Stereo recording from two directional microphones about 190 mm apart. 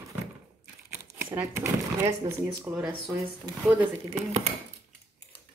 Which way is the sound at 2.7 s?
15° right (ahead or behind).